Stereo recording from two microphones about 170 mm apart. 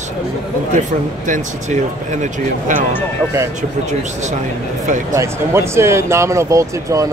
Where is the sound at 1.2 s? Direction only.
45° right (ahead or behind).